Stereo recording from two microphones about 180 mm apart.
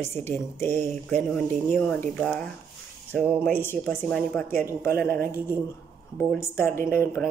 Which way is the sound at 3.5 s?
10° left (ahead or behind).